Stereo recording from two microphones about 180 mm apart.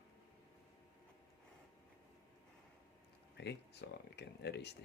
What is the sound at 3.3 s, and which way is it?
Speech, 70° left (ahead or behind).